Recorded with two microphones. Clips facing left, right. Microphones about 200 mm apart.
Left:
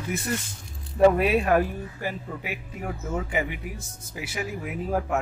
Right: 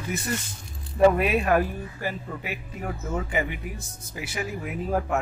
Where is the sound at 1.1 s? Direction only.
30° left (ahead or behind).